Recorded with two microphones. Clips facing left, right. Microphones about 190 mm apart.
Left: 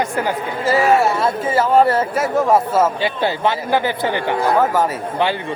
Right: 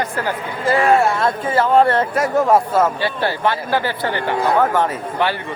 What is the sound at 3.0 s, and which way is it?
Speech, 15° left (ahead or behind).